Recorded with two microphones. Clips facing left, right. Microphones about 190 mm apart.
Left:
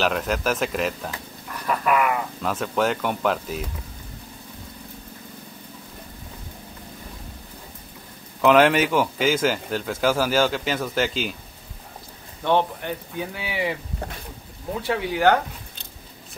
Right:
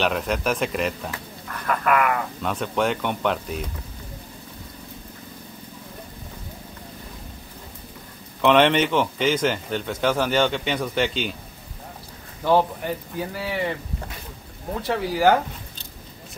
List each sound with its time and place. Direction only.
0.0 s speech: centre (ahead or behind)
1.7 s speech: 15° left (ahead or behind)
2.4 s speech: centre (ahead or behind)
8.4 s speech: 5° left (ahead or behind)
12.4 s speech: 5° right (ahead or behind)
14.8 s speech: centre (ahead or behind)